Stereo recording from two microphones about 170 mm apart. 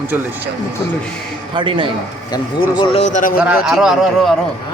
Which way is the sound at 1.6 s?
30° right (ahead or behind).